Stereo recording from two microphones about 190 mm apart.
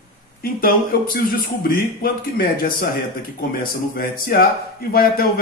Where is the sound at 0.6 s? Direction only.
50° left (ahead or behind).